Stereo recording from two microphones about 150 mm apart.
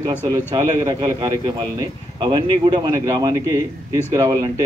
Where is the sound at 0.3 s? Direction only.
25° right (ahead or behind).